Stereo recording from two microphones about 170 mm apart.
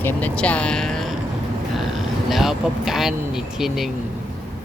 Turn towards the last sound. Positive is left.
turn(degrees=0)  # may be behind; listen again after turning